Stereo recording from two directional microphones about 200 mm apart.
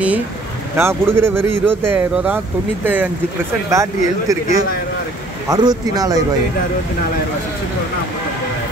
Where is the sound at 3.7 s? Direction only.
15° right (ahead or behind).